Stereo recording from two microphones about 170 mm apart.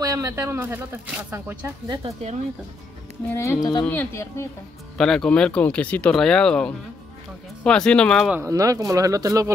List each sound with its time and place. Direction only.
0.0 s speech: 20° right (ahead or behind)
3.3 s speech: 15° left (ahead or behind)
4.9 s speech: 5° left (ahead or behind)
8.3 s speech: 15° right (ahead or behind)